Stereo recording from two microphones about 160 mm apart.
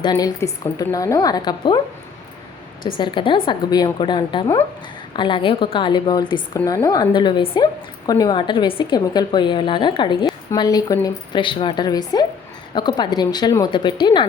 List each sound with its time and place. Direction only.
0.0 s a woman's voice: 25° left (ahead or behind)
2.8 s a woman's voice: 30° left (ahead or behind)